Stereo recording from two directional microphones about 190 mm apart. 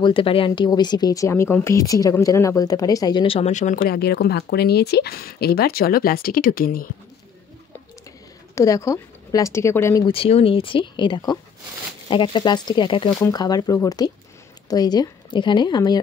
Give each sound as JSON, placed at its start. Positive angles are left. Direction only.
{"t": 0.0, "sound": "speech", "side_deg": 25}
{"t": 3.8, "sound": "speech", "side_deg": 60}
{"t": 8.5, "sound": "a woman's voice", "side_deg": 15}
{"t": 10.0, "sound": "speech", "side_deg": 30}